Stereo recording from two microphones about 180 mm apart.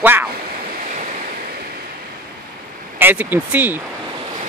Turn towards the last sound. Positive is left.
turn(degrees=-10)  # may be behind; listen again after turning